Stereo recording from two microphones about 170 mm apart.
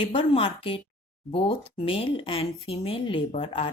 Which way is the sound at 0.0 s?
30° left (ahead or behind).